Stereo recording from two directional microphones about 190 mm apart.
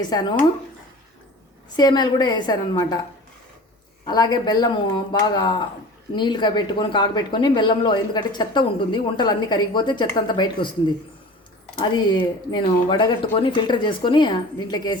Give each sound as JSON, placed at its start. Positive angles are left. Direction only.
{"t": 0.1, "sound": "speech", "side_deg": 20}
{"t": 1.7, "sound": "speech", "side_deg": 20}
{"t": 4.0, "sound": "speech", "side_deg": 20}
{"t": 11.8, "sound": "speech", "side_deg": 25}